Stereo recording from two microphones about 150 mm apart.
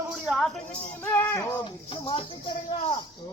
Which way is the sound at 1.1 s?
15° left (ahead or behind).